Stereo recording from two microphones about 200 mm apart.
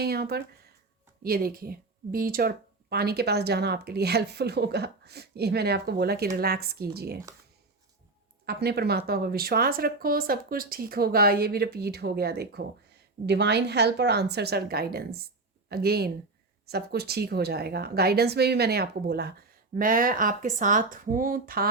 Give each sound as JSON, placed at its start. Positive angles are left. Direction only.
{"t": 0.0, "sound": "a woman's voice", "side_deg": -50}
{"t": 8.4, "sound": "a woman's voice", "side_deg": -50}